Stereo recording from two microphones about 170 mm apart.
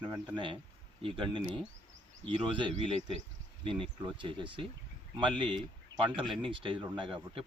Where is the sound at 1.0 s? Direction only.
30° right (ahead or behind).